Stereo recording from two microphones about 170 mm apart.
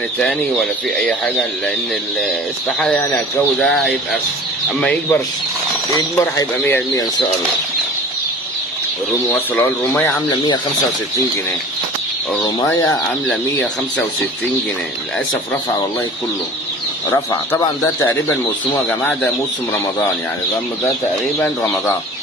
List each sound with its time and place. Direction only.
0.2 s speech: 5° left (ahead or behind)
2.8 s speech: 5° left (ahead or behind)
5.9 s speech: 20° left (ahead or behind)
9.6 s speech: 10° left (ahead or behind)
10.4 s speech: 25° left (ahead or behind)
12.6 s speech: 20° left (ahead or behind)
13.3 s speech: 5° left (ahead or behind)
17.1 s speech: 20° left (ahead or behind)